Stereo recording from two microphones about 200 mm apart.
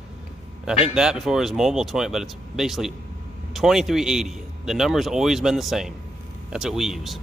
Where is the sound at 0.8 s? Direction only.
5° right (ahead or behind).